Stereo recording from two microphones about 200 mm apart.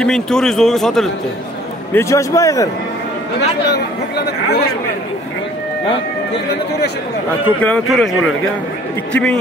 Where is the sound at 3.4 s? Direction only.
55° left (ahead or behind).